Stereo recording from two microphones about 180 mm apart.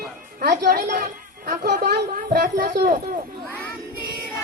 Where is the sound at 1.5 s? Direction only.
50° right (ahead or behind).